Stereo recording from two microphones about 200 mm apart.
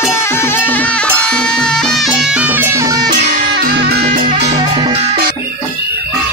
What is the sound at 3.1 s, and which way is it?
Music, 40° right (ahead or behind).